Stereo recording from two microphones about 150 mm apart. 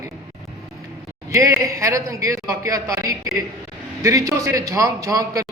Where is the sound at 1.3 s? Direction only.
20° right (ahead or behind).